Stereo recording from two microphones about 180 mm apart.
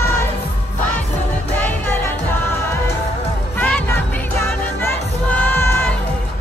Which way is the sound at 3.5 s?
10° left (ahead or behind).